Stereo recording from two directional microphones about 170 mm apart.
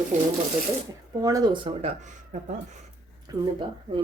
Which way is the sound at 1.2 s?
20° right (ahead or behind).